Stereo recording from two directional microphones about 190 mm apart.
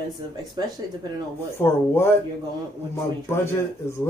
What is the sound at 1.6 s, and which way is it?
Speech, 10° left (ahead or behind).